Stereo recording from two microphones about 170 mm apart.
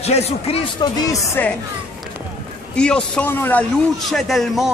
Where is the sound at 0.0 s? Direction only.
40° left (ahead or behind).